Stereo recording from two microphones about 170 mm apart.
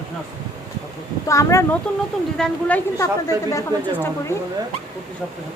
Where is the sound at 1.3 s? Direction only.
20° left (ahead or behind).